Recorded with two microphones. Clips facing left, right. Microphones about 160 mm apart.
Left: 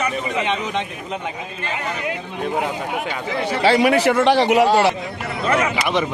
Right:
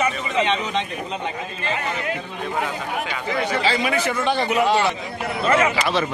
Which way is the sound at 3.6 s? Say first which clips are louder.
Left 7 dB; 65° left (ahead or behind).